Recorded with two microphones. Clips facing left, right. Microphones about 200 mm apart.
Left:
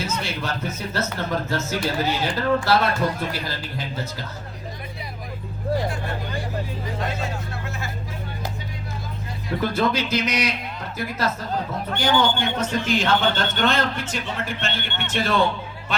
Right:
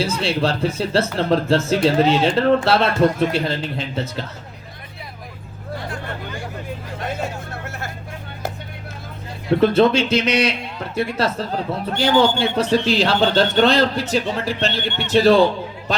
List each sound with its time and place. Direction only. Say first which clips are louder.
0.0 s speech: right 8 dB; 30° right (ahead or behind)
9.6 s speech: right 8 dB; 25° right (ahead or behind)